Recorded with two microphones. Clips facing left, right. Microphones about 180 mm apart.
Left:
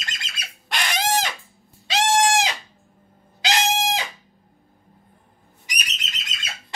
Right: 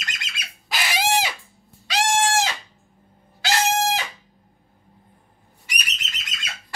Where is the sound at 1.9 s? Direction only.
20° left (ahead or behind).